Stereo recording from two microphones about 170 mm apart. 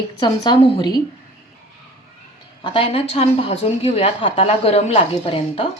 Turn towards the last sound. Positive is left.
turn(degrees=30)  # may be behind; listen again after turning